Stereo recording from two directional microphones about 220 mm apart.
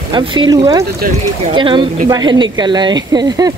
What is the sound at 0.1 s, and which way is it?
Speech, 20° right (ahead or behind).